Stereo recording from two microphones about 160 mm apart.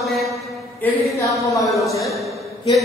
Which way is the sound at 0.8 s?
20° left (ahead or behind).